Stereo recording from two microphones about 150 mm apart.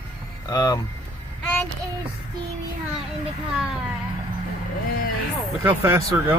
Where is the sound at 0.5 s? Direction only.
25° left (ahead or behind).